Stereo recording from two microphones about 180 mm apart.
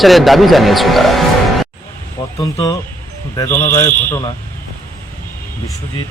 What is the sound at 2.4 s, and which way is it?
A man's voice, 20° left (ahead or behind).